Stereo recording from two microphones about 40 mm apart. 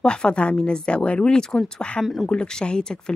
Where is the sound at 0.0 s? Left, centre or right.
Left.